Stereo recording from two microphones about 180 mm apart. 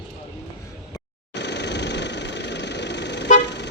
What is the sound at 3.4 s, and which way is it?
Car, 70° left (ahead or behind).